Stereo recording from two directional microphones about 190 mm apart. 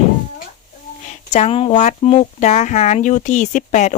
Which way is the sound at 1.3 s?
35° left (ahead or behind).